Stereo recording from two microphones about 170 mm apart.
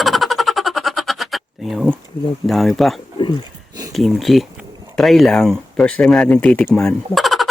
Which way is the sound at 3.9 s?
Centre (ahead or behind).